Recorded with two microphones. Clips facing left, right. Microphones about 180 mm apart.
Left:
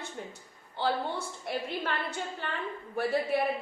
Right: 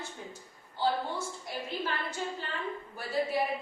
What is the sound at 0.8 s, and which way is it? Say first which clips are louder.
A woman's voice: even; 65° left (ahead or behind).